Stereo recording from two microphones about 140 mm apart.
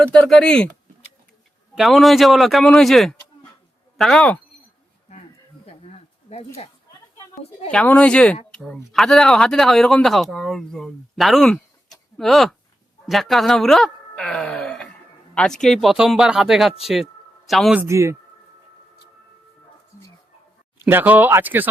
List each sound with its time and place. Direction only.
0.0 s speech: 5° left (ahead or behind)
1.7 s speech: centre (ahead or behind)
5.8 s a sound: 45° left (ahead or behind)
7.7 s speech: 10° left (ahead or behind)
13.1 s a sound: centre (ahead or behind)
15.4 s speech: 5° left (ahead or behind)
16.8 s a sound: centre (ahead or behind)
17.7 s speech: 20° right (ahead or behind)
20.7 s speech: 15° right (ahead or behind)